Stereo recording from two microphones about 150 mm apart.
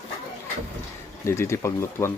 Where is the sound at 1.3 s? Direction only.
20° left (ahead or behind).